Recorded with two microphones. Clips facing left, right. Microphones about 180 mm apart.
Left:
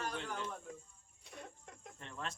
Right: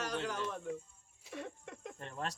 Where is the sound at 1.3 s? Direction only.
85° right.